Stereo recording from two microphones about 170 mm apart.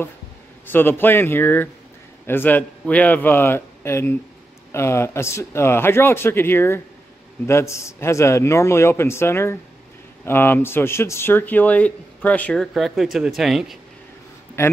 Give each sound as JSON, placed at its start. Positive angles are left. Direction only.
{"t": 0.7, "sound": "speech", "side_deg": 10}
{"t": 14.6, "sound": "speech", "side_deg": 15}